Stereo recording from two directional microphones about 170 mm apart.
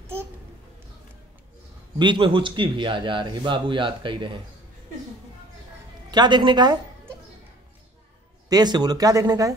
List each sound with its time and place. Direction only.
0.0 s babbling: 15° right (ahead or behind)
2.0 s a man's voice: 30° right (ahead or behind)
6.0 s a man's voice: 25° right (ahead or behind)
8.5 s a man's voice: 25° right (ahead or behind)